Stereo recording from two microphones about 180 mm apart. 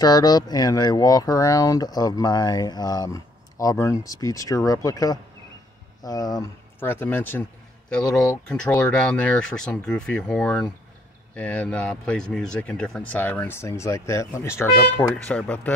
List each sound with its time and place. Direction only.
0.0 s speech: 20° left (ahead or behind)